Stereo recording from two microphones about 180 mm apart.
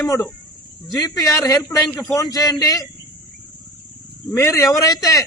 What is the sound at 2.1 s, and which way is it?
Speech, 20° left (ahead or behind).